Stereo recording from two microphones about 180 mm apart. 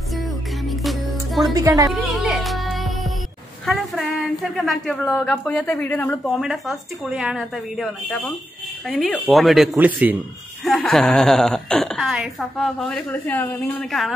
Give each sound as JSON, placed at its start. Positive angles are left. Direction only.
{"t": 0.1, "sound": "music", "side_deg": 0}
{"t": 1.5, "sound": "a woman's voice", "side_deg": -20}
{"t": 1.9, "sound": "music", "side_deg": 0}
{"t": 3.6, "sound": "speech", "side_deg": 0}
{"t": 6.3, "sound": "a woman's voice", "side_deg": 0}